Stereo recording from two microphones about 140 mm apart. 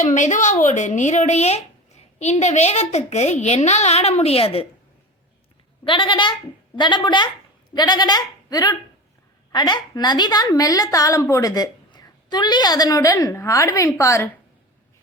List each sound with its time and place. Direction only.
0.0 s a woman's voice: 60° left (ahead or behind); by 4.6 s 45° left (ahead or behind)
5.8 s a woman's voice: 35° left (ahead or behind); by 14.3 s 20° left (ahead or behind)